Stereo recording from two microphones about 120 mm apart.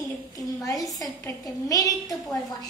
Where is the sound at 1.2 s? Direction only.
30° left (ahead or behind).